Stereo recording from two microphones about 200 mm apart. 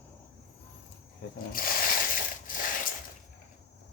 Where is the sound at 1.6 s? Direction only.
45° left (ahead or behind).